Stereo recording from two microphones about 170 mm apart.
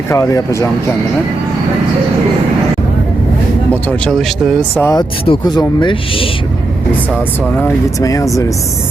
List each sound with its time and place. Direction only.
0.1 s speech: 20° left (ahead or behind)
3.7 s speech: 10° left (ahead or behind)
4.8 s speech: 20° left (ahead or behind)
8.0 s speech: 20° left (ahead or behind)